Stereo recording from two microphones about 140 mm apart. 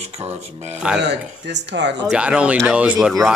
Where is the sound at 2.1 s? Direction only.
10° right (ahead or behind).